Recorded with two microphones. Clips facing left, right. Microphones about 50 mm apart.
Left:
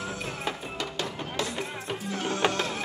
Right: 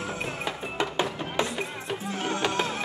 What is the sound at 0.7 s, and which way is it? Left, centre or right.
Music, right.